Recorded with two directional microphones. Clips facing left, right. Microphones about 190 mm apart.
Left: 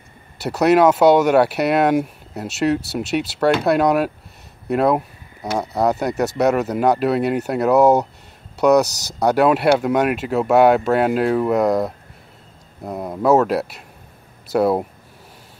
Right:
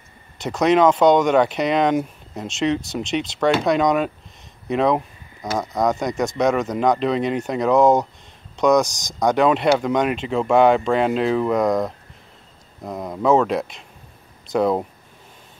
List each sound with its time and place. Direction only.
0.4 s speech: 5° left (ahead or behind)
8.8 s speech: 70° left (ahead or behind)
9.2 s speech: 5° left (ahead or behind)